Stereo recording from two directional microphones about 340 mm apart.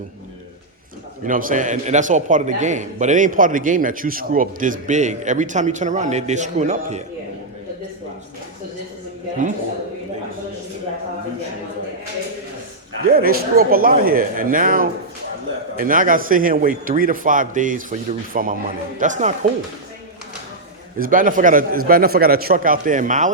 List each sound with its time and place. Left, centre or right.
1.2 s a man's voice: right
13.0 s a man's voice: right
21.0 s a man's voice: right